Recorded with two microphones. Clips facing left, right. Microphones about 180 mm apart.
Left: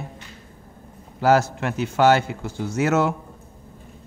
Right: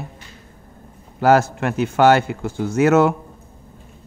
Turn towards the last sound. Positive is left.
turn(degrees=-60)  # may be behind; listen again after turning